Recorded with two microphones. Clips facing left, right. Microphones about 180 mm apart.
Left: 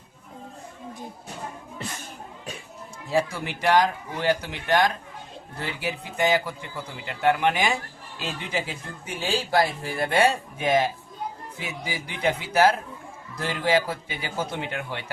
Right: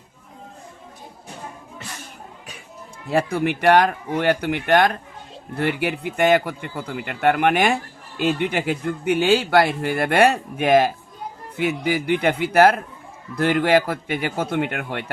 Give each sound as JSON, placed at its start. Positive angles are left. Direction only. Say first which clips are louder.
{"t": 3.1, "sound": "speech", "louder": "right 5 dB", "side_deg": -60}